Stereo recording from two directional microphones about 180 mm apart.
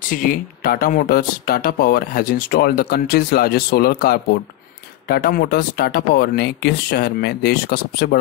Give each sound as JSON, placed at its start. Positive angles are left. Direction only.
{"t": 0.1, "sound": "speech", "side_deg": 50}